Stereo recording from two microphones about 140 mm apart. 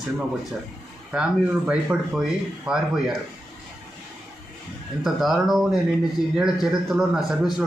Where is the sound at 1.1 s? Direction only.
10° right (ahead or behind).